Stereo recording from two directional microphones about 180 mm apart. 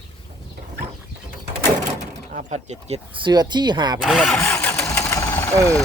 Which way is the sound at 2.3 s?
40° right (ahead or behind).